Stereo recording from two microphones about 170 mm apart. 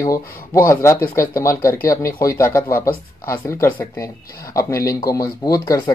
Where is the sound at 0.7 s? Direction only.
15° left (ahead or behind).